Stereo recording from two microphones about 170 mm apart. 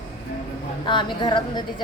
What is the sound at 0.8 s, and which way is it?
Speech, 25° left (ahead or behind).